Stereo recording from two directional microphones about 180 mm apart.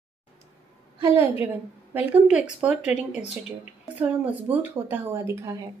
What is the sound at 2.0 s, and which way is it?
A woman's voice, 5° right (ahead or behind).